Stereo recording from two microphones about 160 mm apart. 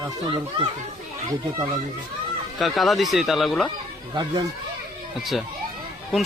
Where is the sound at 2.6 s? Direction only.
Centre (ahead or behind).